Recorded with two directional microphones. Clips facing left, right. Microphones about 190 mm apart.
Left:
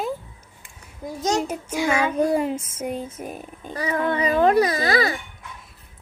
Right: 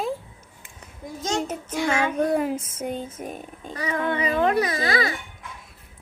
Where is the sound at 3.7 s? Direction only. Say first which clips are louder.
Left 2 dB; 35° left (ahead or behind).